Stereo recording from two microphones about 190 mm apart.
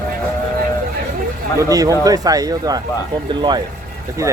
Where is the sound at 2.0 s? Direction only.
20° right (ahead or behind).